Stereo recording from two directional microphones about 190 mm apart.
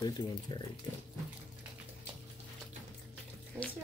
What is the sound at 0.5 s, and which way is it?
Speech, 25° left (ahead or behind).